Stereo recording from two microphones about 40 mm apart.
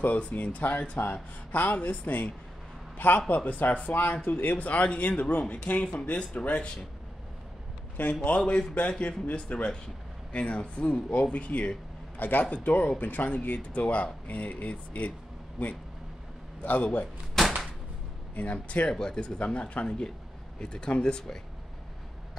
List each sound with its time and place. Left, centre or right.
0.3 s speech: left
8.1 s speech: left
12.2 s speech: left
13.6 s speech: left
16.6 s speech: left
17.4 s a sound: centre
18.3 s speech: left
18.9 s speech: centre